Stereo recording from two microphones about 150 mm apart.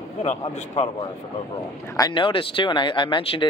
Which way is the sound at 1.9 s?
30° left (ahead or behind).